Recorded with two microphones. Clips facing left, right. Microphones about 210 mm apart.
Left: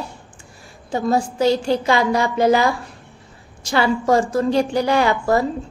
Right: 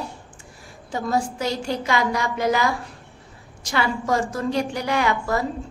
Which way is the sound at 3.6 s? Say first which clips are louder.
Left 5 dB; 30° left (ahead or behind).